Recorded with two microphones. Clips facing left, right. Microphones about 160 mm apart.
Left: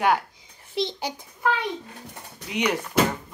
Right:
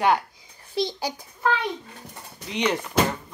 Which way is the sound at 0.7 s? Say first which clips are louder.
Right 1 dB; 35° right (ahead or behind).